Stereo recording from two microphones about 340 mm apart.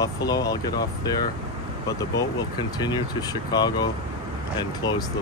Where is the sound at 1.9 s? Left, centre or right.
Centre.